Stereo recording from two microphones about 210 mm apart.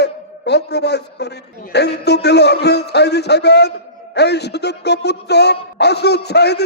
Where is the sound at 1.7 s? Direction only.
55° left (ahead or behind).